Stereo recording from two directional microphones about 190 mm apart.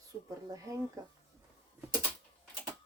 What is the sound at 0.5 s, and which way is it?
Speech, 15° right (ahead or behind).